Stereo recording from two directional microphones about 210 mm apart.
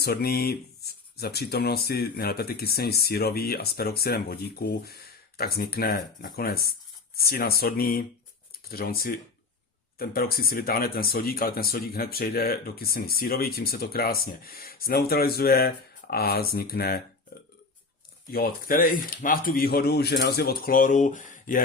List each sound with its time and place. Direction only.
0.0 s speech: 45° left (ahead or behind)
18.3 s speech: 45° left (ahead or behind)